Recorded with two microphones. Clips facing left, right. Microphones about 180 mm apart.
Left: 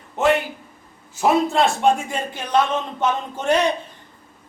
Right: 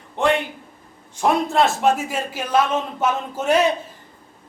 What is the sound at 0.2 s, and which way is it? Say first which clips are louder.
A man's voice: left 1 dB; 5° left (ahead or behind).